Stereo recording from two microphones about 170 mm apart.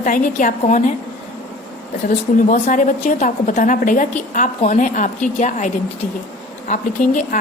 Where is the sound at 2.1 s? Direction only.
50° left (ahead or behind).